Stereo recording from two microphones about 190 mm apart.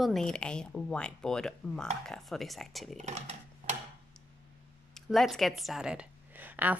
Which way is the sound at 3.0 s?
35° right (ahead or behind).